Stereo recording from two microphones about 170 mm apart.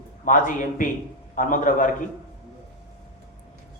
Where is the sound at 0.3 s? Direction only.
50° left (ahead or behind).